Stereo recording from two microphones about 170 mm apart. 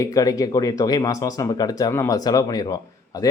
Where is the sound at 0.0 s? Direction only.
20° left (ahead or behind).